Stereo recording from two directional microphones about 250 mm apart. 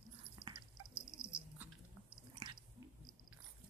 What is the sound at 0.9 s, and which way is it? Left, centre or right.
Bird, centre.